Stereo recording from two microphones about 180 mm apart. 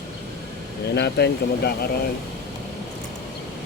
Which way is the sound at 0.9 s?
65° left (ahead or behind).